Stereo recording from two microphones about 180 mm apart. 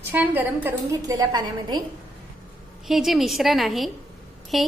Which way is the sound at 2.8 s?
Centre (ahead or behind).